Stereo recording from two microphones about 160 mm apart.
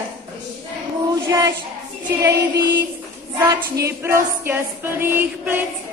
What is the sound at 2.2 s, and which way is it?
Music, 15° right (ahead or behind).